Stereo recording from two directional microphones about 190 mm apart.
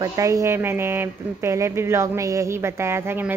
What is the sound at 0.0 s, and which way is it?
Speech, 15° right (ahead or behind).